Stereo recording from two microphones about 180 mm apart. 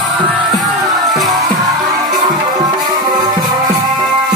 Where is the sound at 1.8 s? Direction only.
20° right (ahead or behind).